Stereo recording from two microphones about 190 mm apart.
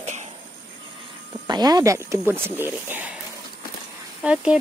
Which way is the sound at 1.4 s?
20° right (ahead or behind).